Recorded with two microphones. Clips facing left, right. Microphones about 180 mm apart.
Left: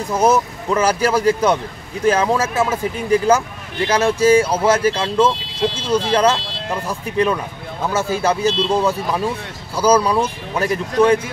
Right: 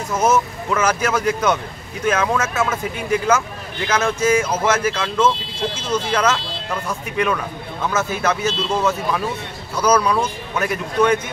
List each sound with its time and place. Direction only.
0.2 s speech: 35° left (ahead or behind)
9.8 s speech: 30° left (ahead or behind)